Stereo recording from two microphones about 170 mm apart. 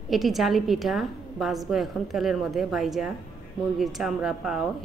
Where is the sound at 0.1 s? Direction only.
Centre (ahead or behind).